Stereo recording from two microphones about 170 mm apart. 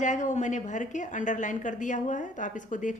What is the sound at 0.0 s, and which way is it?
Speech, 45° left (ahead or behind).